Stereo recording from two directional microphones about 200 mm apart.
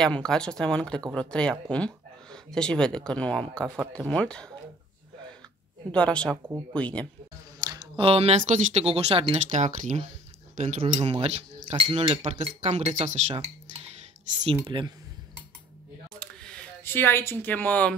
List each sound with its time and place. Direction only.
0.0 s speech: 5° left (ahead or behind)
5.9 s speech: 5° left (ahead or behind)
6.3 s speech: 15° right (ahead or behind)
6.7 s speech: 5° left (ahead or behind)
7.6 s speech: 20° right (ahead or behind)
16.2 s a sound: 5° left (ahead or behind)